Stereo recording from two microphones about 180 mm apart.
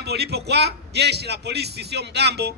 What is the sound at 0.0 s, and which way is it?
A man's voice, 65° right (ahead or behind).